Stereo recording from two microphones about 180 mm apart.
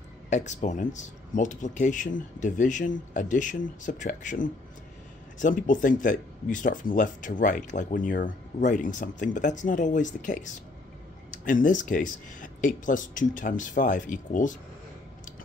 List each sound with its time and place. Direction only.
0.3 s speech: 40° left (ahead or behind)